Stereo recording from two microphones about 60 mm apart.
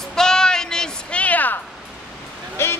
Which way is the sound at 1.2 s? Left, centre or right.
Left.